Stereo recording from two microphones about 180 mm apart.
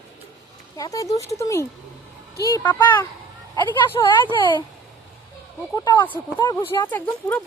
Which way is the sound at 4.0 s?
20° left (ahead or behind).